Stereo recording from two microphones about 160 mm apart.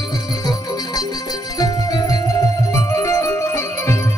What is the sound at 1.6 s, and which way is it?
Music, 20° left (ahead or behind).